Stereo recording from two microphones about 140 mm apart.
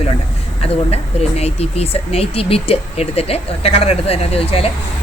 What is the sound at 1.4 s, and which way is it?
Speech, 50° left (ahead or behind).